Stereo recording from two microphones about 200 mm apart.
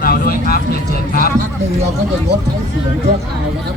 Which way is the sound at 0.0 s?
45° left (ahead or behind).